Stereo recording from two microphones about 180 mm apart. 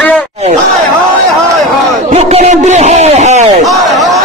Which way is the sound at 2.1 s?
40° right (ahead or behind).